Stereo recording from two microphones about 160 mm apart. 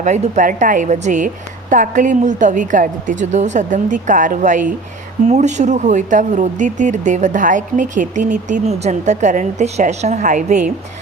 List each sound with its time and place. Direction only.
0.0 s speech: 50° right (ahead or behind)